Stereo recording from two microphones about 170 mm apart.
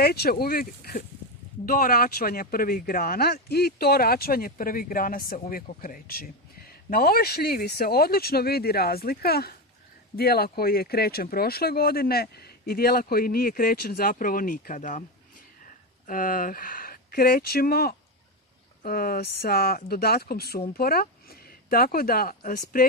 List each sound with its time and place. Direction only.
0.0 s speech: 65° left (ahead or behind)